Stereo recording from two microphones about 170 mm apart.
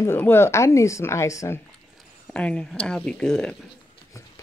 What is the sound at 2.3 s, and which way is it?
Speech, 5° left (ahead or behind).